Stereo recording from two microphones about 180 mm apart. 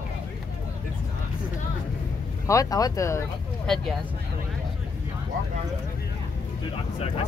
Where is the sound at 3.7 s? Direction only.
5° left (ahead or behind).